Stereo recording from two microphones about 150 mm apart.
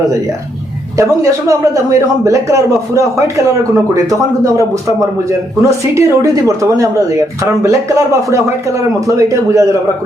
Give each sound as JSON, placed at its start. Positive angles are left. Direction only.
{"t": 0.9, "sound": "a man's voice", "side_deg": -20}